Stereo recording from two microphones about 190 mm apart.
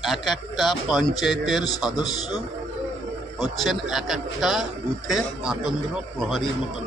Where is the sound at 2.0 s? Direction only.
20° left (ahead or behind).